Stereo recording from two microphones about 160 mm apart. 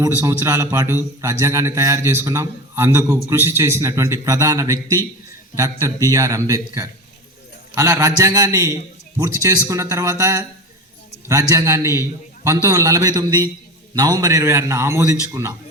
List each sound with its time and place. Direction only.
0.0 s a man's voice: 15° right (ahead or behind)